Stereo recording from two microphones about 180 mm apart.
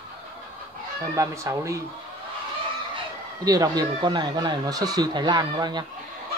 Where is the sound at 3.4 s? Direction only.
20° right (ahead or behind).